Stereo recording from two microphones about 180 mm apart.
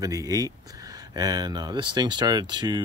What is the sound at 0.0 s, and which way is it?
Speech, 20° right (ahead or behind).